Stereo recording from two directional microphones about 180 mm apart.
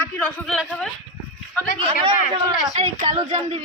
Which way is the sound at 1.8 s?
25° right (ahead or behind).